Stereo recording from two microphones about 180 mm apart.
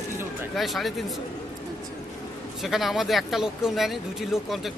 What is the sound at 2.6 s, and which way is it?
Speech, centre (ahead or behind).